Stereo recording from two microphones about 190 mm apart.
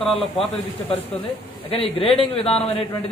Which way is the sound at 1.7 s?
30° left (ahead or behind).